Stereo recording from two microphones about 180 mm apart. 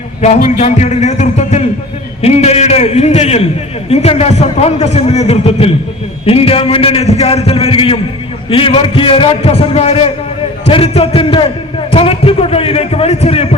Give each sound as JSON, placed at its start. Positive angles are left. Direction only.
{"t": 0.2, "sound": "a man's voice", "side_deg": 40}